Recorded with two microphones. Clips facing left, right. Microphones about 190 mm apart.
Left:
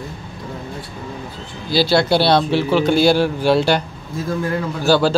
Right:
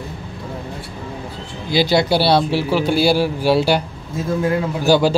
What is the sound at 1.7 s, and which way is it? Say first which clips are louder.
Speech: even; 15° right (ahead or behind).